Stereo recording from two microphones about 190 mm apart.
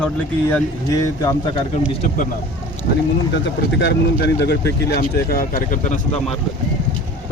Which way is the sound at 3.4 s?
65° left (ahead or behind).